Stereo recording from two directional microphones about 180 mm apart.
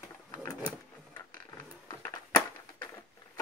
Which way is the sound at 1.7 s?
15° left (ahead or behind).